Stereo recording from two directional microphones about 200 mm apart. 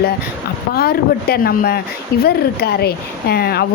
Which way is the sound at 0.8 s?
50° left (ahead or behind).